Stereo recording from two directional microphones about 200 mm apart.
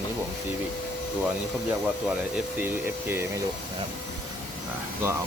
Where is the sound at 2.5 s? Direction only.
10° right (ahead or behind).